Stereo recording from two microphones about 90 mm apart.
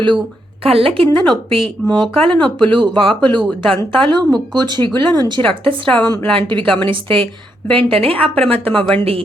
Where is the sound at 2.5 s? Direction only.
60° right (ahead or behind).